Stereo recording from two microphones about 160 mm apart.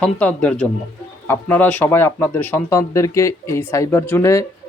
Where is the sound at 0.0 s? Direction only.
10° left (ahead or behind).